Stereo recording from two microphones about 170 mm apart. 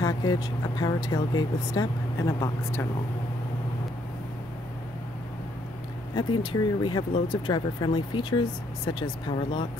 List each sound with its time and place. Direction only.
0.0 s speech: 25° left (ahead or behind)
6.1 s speech: 25° left (ahead or behind)